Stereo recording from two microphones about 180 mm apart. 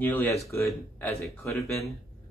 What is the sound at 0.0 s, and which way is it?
Speech, 10° left (ahead or behind).